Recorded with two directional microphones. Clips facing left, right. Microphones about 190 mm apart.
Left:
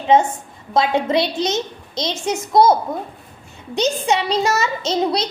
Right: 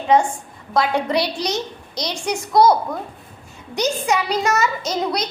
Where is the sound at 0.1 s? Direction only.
20° left (ahead or behind).